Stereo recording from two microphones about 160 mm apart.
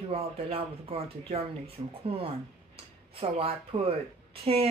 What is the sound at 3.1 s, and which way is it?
Speech, 40° right (ahead or behind).